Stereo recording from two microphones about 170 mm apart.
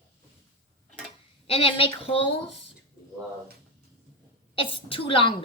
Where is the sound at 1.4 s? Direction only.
35° left (ahead or behind).